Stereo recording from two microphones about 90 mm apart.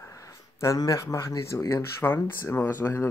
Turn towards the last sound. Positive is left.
turn(degrees=25)  # may be behind; listen again after turning